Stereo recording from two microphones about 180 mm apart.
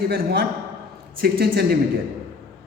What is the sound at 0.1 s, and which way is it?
A man's voice, 55° right (ahead or behind).